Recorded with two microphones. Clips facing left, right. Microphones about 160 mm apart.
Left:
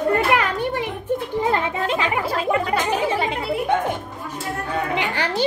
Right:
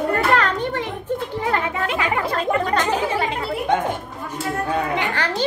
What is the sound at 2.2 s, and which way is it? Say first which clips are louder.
Music: even; 10° left (ahead or behind).